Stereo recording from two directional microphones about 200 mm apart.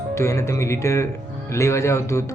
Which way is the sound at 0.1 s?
15° left (ahead or behind).